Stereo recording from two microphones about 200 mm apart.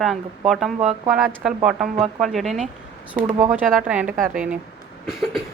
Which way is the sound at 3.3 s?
35° right (ahead or behind).